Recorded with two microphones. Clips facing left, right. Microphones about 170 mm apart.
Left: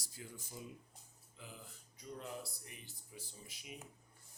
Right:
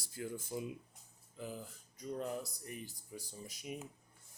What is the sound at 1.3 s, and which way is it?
Speech, 45° right (ahead or behind).